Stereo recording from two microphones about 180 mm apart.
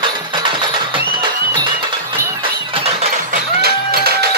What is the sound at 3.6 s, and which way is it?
Music, 60° right (ahead or behind).